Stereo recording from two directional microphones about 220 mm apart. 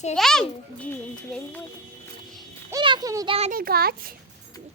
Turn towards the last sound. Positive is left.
turn(degrees=-45)  # may be behind; listen again after turning